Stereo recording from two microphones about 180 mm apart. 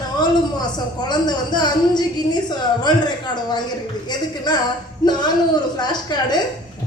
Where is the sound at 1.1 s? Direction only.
25° left (ahead or behind).